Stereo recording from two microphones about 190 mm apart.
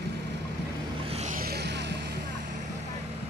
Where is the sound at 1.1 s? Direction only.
35° right (ahead or behind).